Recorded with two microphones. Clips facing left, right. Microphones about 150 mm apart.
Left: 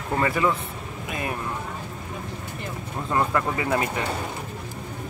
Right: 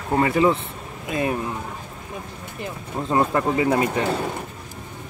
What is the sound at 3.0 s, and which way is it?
Speech, 25° right (ahead or behind).